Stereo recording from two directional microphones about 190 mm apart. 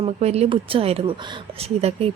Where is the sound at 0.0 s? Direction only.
35° right (ahead or behind).